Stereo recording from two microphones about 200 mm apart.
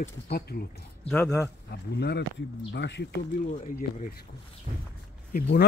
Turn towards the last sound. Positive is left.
turn(degrees=50)  # may be behind; listen again after turning